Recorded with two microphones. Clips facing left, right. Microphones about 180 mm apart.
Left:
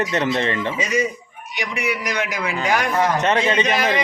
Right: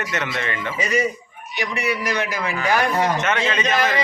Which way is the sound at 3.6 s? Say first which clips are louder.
Even; 15° left (ahead or behind).